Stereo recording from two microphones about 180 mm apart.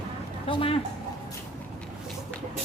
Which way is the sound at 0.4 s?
30° left (ahead or behind).